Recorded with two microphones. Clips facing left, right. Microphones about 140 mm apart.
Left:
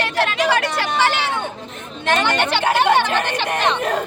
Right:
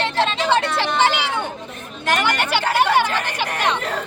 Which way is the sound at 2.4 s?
10° right (ahead or behind).